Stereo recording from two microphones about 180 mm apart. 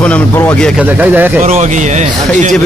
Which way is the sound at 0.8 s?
10° right (ahead or behind).